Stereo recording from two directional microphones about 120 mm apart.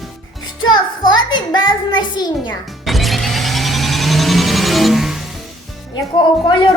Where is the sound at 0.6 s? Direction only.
35° left (ahead or behind).